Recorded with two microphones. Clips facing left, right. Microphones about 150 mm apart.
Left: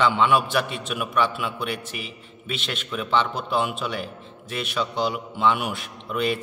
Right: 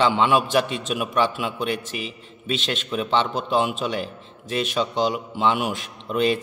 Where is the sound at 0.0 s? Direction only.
25° right (ahead or behind).